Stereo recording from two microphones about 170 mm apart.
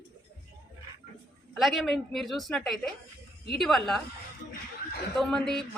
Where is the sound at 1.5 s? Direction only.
Centre (ahead or behind).